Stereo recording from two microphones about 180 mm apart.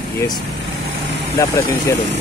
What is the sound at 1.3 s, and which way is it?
Speech, 15° left (ahead or behind).